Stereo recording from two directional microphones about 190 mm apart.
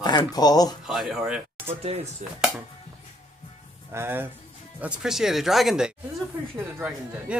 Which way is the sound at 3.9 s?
10° right (ahead or behind).